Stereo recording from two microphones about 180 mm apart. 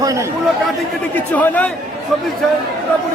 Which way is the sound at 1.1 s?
10° left (ahead or behind).